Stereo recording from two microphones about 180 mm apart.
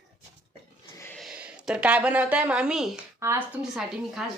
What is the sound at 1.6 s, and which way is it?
Speech, 5° right (ahead or behind).